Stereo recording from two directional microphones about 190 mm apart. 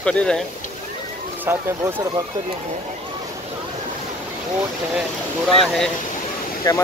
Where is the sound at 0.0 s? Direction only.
5° left (ahead or behind).